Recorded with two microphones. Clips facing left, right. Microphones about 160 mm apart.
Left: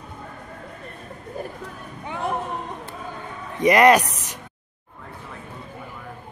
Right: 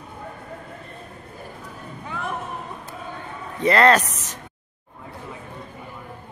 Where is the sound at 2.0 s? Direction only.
25° left (ahead or behind).